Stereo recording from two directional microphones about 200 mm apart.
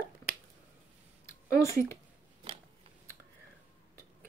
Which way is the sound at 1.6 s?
15° left (ahead or behind).